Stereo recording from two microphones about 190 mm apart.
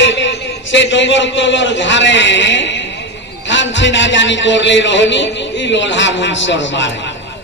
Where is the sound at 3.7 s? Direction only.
75° left (ahead or behind).